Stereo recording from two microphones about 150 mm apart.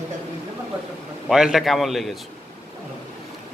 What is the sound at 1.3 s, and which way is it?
Speech, 5° right (ahead or behind).